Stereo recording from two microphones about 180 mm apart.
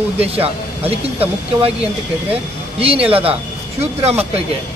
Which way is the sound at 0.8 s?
30° right (ahead or behind).